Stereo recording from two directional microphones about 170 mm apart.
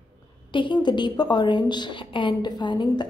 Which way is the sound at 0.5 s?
30° left (ahead or behind).